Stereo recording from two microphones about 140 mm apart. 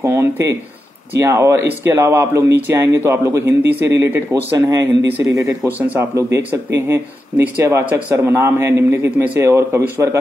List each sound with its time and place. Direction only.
0.0 s speech: 20° right (ahead or behind)